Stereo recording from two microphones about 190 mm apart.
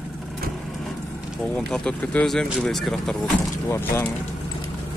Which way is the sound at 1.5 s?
Centre (ahead or behind).